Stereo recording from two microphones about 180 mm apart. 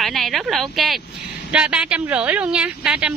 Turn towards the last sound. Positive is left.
turn(degrees=-5)  # may be behind; listen again after turning